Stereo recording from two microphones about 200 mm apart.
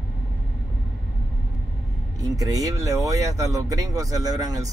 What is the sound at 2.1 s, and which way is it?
Speech, 20° right (ahead or behind).